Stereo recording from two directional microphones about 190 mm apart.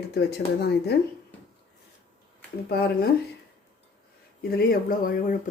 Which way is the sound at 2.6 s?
55° left (ahead or behind).